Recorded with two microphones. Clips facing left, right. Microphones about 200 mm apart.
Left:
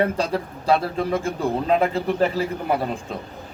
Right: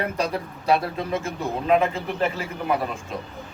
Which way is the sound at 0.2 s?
30° left (ahead or behind).